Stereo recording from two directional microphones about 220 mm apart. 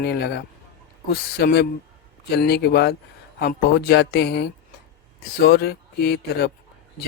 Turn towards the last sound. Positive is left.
turn(degrees=45)  # may be behind; listen again after turning